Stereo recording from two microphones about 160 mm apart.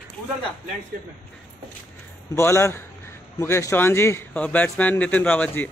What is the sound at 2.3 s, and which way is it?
A man's voice, 15° left (ahead or behind).